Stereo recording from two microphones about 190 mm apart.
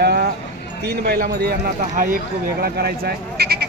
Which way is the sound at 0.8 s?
55° right (ahead or behind).